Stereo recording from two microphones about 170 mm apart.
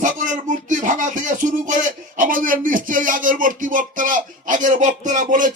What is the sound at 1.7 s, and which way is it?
Speech, 50° right (ahead or behind).